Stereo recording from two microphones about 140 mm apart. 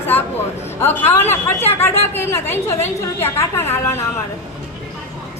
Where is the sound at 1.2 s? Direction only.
50° left (ahead or behind).